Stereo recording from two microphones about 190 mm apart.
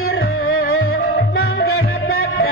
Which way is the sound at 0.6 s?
55° left (ahead or behind).